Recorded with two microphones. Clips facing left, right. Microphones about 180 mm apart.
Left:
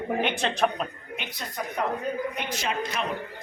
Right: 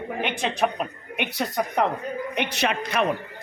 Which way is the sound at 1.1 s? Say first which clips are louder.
Right 8 dB; 70° right (ahead or behind).